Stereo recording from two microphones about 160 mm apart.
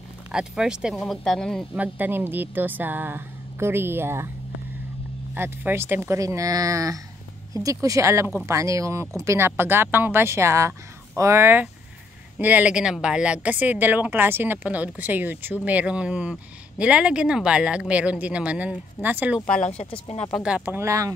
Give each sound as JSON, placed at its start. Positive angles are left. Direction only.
{"t": 0.3, "sound": "speech", "side_deg": -5}
{"t": 1.8, "sound": "a woman's voice", "side_deg": -10}
{"t": 5.3, "sound": "a woman's voice", "side_deg": -10}
{"t": 19.4, "sound": "speech", "side_deg": 50}
{"t": 20.3, "sound": "a woman's voice", "side_deg": -5}